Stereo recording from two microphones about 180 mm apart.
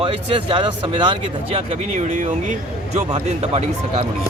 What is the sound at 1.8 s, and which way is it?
A man's voice, 40° right (ahead or behind).